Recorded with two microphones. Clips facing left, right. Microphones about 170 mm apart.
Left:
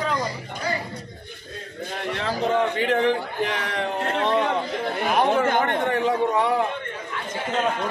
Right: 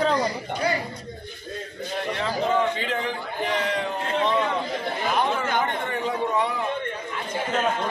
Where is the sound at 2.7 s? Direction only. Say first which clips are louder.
Left 7 dB; 60° left (ahead or behind).